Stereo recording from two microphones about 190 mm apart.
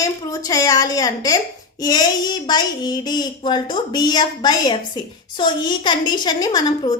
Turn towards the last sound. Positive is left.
turn(degrees=20)  # may be behind; listen again after turning